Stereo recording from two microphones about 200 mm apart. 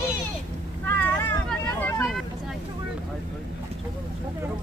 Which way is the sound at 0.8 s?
10° left (ahead or behind).